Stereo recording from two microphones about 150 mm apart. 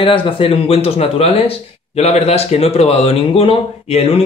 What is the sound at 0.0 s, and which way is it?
Speech, 35° left (ahead or behind).